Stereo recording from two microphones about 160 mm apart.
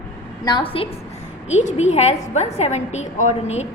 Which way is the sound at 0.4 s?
30° left (ahead or behind).